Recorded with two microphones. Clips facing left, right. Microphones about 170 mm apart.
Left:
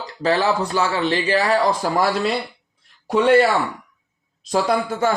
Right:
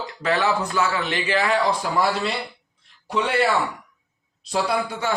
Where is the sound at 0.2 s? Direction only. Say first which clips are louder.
Left 3 dB; 30° left (ahead or behind).